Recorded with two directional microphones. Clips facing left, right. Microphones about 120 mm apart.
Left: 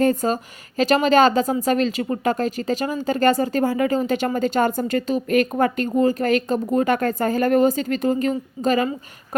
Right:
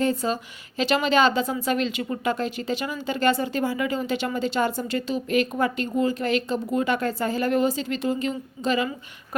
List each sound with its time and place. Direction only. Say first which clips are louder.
0.0 s speech: left 5 dB; 50° left (ahead or behind)